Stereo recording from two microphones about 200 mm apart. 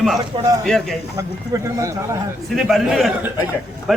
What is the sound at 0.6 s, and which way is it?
Speech, centre (ahead or behind).